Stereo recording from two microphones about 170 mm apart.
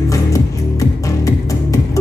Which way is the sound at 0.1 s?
20° left (ahead or behind).